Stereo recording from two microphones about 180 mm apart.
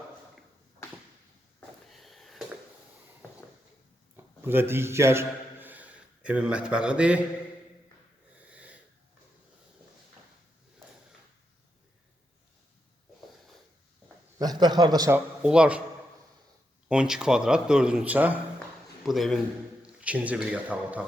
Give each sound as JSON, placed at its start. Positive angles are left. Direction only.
{"t": 1.9, "sound": "sniff", "side_deg": 0}
{"t": 4.2, "sound": "a man's voice", "side_deg": -10}
{"t": 8.4, "sound": "wheeze", "side_deg": -5}
{"t": 14.3, "sound": "a man's voice", "side_deg": -20}
{"t": 15.4, "sound": "speech", "side_deg": -5}
{"t": 16.9, "sound": "a man's voice", "side_deg": -5}